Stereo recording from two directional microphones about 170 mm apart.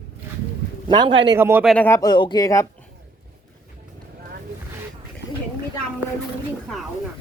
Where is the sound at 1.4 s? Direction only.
15° right (ahead or behind).